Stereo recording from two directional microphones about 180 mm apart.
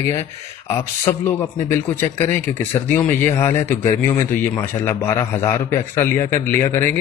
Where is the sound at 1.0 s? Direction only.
10° left (ahead or behind).